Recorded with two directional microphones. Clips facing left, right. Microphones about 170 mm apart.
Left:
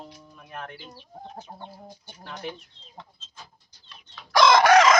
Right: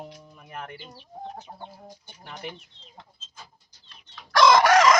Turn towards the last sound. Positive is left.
turn(degrees=0)  # may be behind; listen again after turning